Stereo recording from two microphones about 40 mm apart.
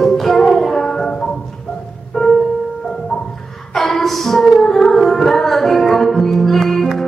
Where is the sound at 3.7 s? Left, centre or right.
Centre.